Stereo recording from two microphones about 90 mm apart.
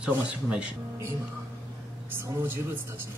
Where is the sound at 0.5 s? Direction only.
15° right (ahead or behind).